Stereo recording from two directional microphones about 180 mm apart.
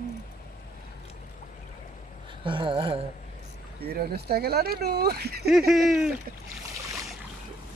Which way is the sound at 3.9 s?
60° right (ahead or behind).